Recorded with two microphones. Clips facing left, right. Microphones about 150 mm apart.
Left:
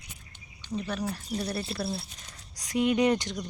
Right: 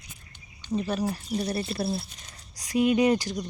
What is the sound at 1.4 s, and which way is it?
Speech, 25° right (ahead or behind).